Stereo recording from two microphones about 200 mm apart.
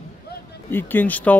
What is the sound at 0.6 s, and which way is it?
Speech, 10° left (ahead or behind).